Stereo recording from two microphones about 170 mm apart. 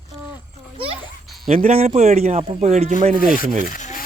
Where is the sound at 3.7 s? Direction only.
50° left (ahead or behind).